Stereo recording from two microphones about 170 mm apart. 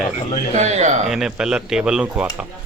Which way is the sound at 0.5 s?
40° right (ahead or behind).